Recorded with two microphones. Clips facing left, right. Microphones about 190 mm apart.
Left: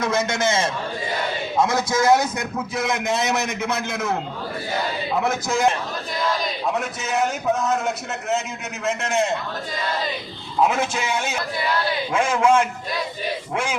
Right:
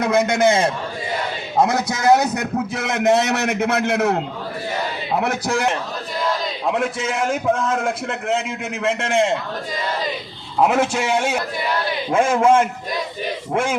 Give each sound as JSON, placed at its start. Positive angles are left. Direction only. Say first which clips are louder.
{"t": 0.0, "sound": "a man's voice", "louder": "right 5 dB", "side_deg": -60}
{"t": 5.2, "sound": "a man's voice", "louder": "left 1 dB", "side_deg": -65}
{"t": 7.7, "sound": "a man's voice", "louder": "right 2 dB", "side_deg": -90}
{"t": 10.6, "sound": "a man's voice", "louder": "right 3 dB", "side_deg": -65}
{"t": 12.1, "sound": "a man's voice", "louder": "right 4 dB", "side_deg": -50}